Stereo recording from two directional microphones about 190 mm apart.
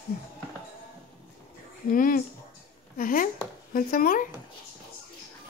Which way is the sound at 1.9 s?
50° left (ahead or behind).